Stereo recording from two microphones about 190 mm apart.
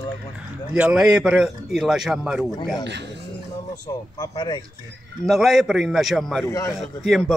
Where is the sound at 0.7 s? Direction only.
5° right (ahead or behind).